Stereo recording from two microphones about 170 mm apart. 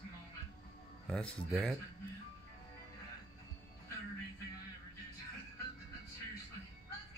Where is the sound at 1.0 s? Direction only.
5° left (ahead or behind).